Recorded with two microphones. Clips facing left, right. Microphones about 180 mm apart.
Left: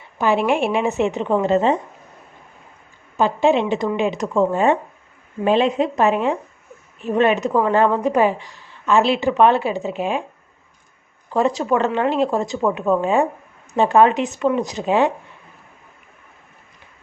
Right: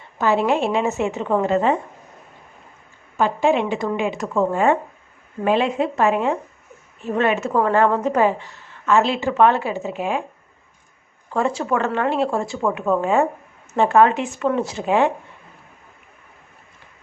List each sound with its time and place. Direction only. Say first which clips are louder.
0.2 s a woman's voice: left 1 dB; 15° left (ahead or behind)
3.2 s a woman's voice: left 2 dB; 20° left (ahead or behind)
11.3 s a woman's voice: left 3 dB; 20° left (ahead or behind)